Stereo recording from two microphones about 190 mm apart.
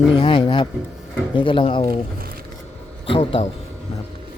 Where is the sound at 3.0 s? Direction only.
30° left (ahead or behind).